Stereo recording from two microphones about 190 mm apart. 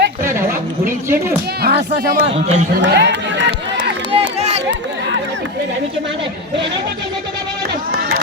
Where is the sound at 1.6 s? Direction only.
55° right (ahead or behind).